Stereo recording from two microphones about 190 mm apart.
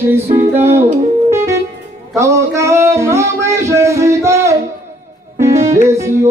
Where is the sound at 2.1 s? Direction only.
15° right (ahead or behind).